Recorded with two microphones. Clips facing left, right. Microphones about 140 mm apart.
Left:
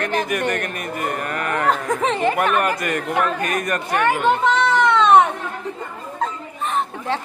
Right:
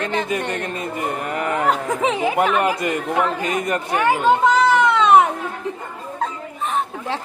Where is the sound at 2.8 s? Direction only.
20° right (ahead or behind); by 5.3 s 5° right (ahead or behind).